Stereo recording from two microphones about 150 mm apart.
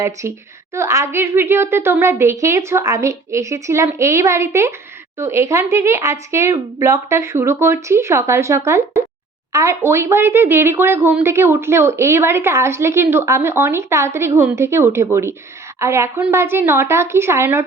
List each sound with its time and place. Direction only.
0.0 s a woman's voice: 20° right (ahead or behind)